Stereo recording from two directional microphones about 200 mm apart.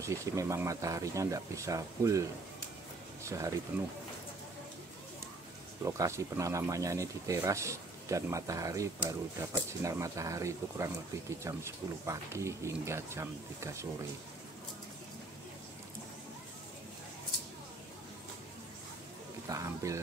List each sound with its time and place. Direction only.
0.0 s speech: 15° right (ahead or behind)
3.3 s speech: 15° right (ahead or behind)
5.9 s speech: 15° right (ahead or behind)
19.5 s a sound: 15° right (ahead or behind)